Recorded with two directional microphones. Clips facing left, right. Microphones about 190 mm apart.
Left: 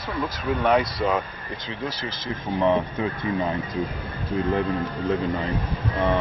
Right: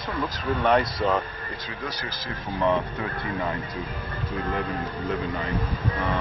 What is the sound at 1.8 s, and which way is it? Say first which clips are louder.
Speech: left 4 dB; 20° left (ahead or behind).